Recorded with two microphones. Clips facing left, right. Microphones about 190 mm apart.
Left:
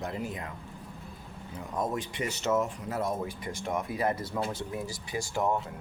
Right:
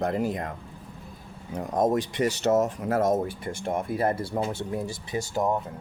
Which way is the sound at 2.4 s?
40° right (ahead or behind).